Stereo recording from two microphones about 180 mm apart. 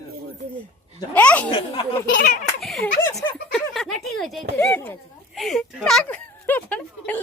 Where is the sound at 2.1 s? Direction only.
45° left (ahead or behind).